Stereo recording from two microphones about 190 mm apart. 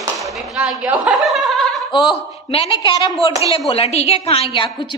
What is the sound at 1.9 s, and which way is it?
A woman's voice, 25° left (ahead or behind).